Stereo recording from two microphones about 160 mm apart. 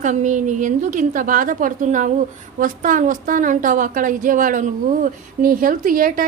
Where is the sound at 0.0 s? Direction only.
50° right (ahead or behind).